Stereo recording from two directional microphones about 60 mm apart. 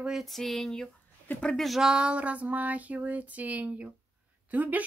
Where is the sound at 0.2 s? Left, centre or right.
Centre.